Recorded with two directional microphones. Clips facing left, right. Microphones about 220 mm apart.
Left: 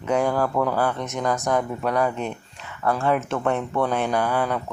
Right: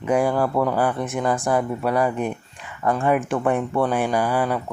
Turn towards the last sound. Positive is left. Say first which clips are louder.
# right 2 dB
turn(degrees=-10)  # may be behind; listen again after turning